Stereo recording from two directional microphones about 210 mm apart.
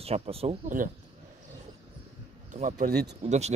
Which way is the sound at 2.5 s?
35° right (ahead or behind).